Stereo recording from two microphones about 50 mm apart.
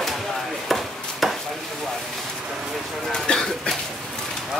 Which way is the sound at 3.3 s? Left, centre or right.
Left.